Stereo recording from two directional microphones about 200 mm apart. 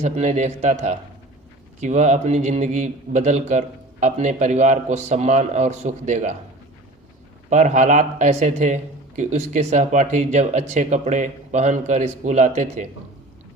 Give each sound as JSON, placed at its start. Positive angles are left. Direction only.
{"t": 0.0, "sound": "a man's voice", "side_deg": -35}
{"t": 7.5, "sound": "a man's voice", "side_deg": -35}